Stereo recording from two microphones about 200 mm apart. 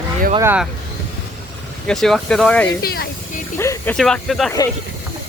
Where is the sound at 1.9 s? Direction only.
Centre (ahead or behind).